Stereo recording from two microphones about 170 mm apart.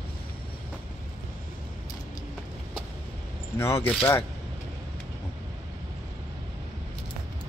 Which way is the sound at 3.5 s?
15° left (ahead or behind).